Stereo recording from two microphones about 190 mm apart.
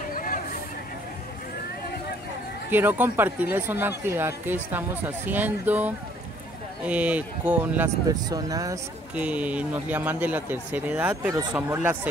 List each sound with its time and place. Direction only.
0.1 s vehicle: 45° left (ahead or behind)
2.7 s speech: 10° right (ahead or behind)
9.1 s speech: 5° right (ahead or behind)